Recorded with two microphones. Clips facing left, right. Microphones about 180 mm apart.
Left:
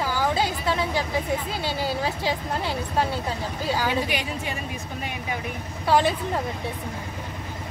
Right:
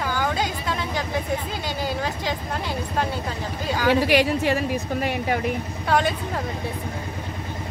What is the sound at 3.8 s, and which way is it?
Speech, 70° right (ahead or behind).